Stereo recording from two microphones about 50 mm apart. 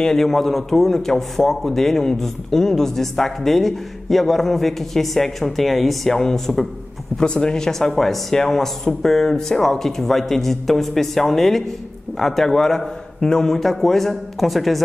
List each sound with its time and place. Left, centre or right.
0.0 s a man's voice: centre
7.2 s a man's voice: centre